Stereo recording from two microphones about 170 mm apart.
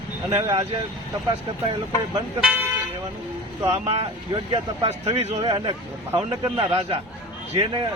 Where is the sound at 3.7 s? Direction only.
40° right (ahead or behind); by 6.6 s 20° right (ahead or behind).